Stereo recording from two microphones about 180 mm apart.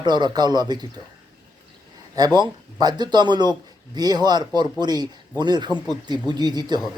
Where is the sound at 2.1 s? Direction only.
20° right (ahead or behind).